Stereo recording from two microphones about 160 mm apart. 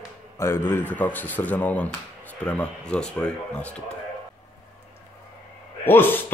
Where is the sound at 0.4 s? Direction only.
15° left (ahead or behind).